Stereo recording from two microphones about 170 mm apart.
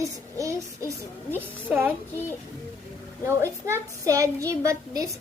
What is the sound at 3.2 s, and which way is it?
A woman's voice, 15° right (ahead or behind).